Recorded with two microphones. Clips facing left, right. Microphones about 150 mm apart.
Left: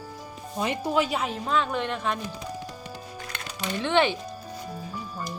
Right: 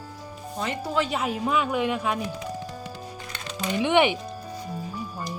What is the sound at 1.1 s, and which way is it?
A woman's voice, 5° right (ahead or behind).